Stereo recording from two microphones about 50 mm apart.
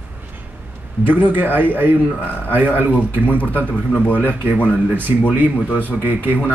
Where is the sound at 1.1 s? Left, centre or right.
Right.